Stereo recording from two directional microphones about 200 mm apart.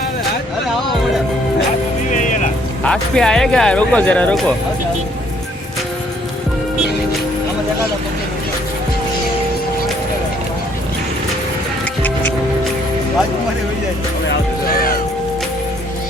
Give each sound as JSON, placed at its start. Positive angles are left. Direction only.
{"t": 2.0, "sound": "music", "side_deg": 40}
{"t": 2.8, "sound": "speech", "side_deg": 5}